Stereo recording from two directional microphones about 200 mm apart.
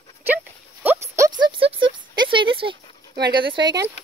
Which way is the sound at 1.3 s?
25° right (ahead or behind).